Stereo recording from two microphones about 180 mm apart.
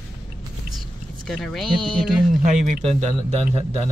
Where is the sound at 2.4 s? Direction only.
40° right (ahead or behind).